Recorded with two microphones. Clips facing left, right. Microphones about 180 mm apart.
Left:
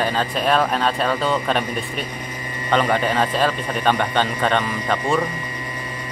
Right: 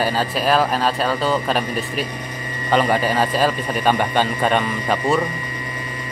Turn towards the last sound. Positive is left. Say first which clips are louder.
# right 2 dB
turn(degrees=-5)  # may be behind; listen again after turning